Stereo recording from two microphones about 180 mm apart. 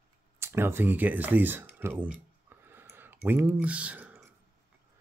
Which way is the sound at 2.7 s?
10° right (ahead or behind).